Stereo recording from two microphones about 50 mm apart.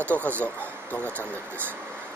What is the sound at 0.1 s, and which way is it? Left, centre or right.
Speech, left.